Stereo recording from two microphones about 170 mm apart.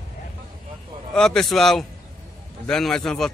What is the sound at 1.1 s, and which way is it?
A man's voice, 5° left (ahead or behind).